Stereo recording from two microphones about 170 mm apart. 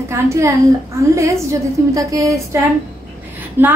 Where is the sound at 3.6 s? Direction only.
10° right (ahead or behind).